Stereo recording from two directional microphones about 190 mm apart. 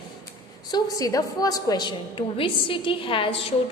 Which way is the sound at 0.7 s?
20° left (ahead or behind).